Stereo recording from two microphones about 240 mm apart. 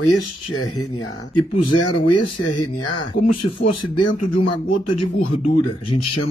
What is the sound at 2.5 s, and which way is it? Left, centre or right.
Speech, left.